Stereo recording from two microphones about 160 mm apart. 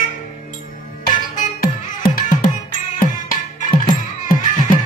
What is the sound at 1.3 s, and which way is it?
Music, 65° left (ahead or behind).